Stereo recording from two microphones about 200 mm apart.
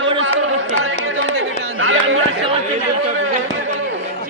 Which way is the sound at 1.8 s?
90° right.